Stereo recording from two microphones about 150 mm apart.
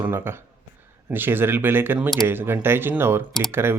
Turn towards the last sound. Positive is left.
turn(degrees=-15)  # may be behind; listen again after turning